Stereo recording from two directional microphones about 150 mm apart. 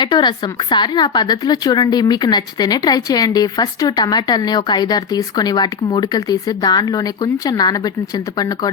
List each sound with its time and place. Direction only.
0.0 s a woman's voice: 30° left (ahead or behind)